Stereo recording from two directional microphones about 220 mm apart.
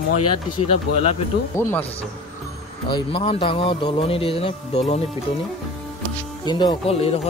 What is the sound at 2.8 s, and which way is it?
Speech, 20° left (ahead or behind).